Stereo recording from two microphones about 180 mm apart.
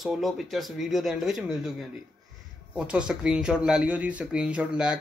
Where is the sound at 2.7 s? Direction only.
5° right (ahead or behind).